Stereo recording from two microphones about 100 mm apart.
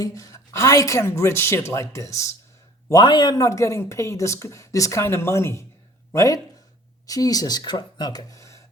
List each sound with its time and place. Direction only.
0.0 s speech: 35° left (ahead or behind)
2.9 s speech: 45° left (ahead or behind)
3.4 s speech: 30° left (ahead or behind)